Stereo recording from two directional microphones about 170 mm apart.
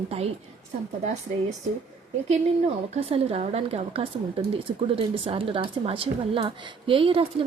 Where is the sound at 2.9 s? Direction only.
35° right (ahead or behind).